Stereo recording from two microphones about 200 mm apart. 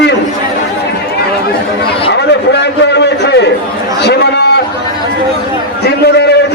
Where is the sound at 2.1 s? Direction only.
55° left (ahead or behind).